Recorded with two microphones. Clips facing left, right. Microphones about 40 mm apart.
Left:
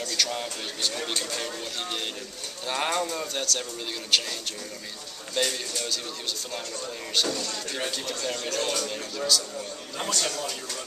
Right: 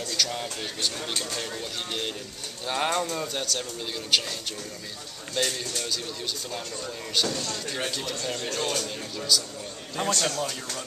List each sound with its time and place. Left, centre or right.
0.1 s speech: centre
5.3 s speech: centre
10.0 s a man's voice: right